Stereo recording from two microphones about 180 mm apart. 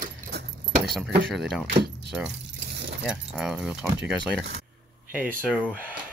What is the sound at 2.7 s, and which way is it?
Keys jangling, 70° right (ahead or behind).